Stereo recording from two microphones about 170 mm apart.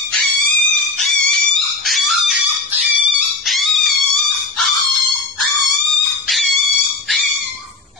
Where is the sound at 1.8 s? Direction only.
Centre (ahead or behind).